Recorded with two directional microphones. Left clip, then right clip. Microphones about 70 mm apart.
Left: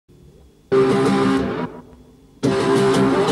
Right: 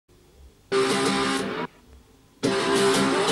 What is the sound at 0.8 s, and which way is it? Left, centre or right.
Music, right.